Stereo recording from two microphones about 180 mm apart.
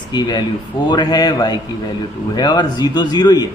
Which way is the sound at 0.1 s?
25° left (ahead or behind).